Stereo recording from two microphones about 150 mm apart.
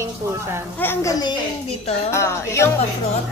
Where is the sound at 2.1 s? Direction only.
20° left (ahead or behind).